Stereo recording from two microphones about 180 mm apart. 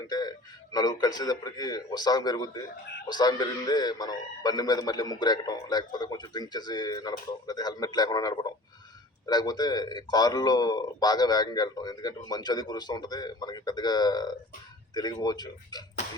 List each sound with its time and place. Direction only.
0.1 s music: 20° left (ahead or behind)
1.0 s a man's voice: 20° left (ahead or behind)